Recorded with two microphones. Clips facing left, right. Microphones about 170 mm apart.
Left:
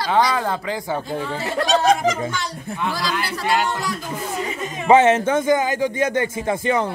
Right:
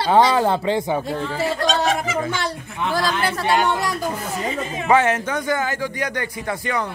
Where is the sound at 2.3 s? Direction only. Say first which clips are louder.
Right 1 dB; 55° right (ahead or behind).